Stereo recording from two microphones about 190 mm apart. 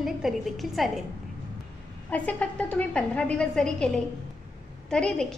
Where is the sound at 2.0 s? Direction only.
10° left (ahead or behind).